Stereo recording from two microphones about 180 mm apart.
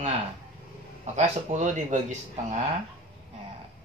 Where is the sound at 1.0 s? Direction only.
40° right (ahead or behind).